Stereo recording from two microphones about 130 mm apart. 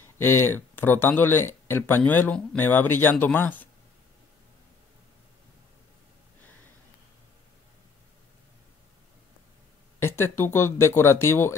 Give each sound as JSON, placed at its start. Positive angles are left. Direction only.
{"t": 0.2, "sound": "speech", "side_deg": 15}
{"t": 9.9, "sound": "speech", "side_deg": 20}